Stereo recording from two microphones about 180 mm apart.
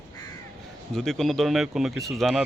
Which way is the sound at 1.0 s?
Centre (ahead or behind).